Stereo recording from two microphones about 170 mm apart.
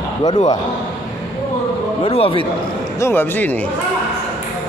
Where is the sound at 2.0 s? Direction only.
35° left (ahead or behind).